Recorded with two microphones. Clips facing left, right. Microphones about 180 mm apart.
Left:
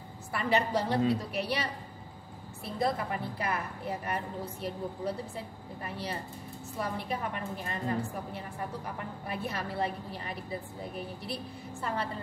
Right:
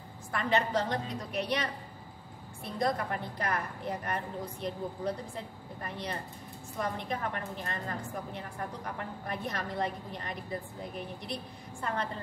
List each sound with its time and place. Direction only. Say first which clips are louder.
0.3 s a woman's voice: left 1 dB; 10° left (ahead or behind)